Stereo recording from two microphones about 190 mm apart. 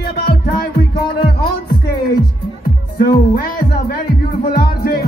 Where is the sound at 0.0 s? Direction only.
55° left (ahead or behind).